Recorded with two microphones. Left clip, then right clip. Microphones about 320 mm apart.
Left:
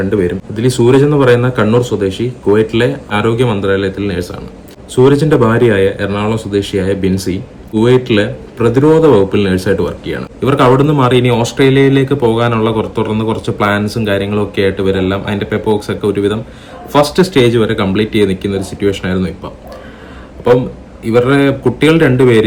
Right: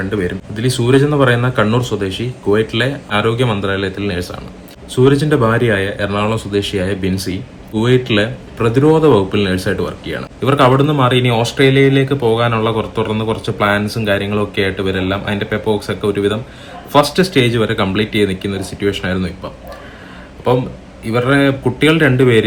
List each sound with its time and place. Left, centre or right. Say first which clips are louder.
0.0 s speech: left 5 dB; centre
21.0 s speech: left 3 dB; centre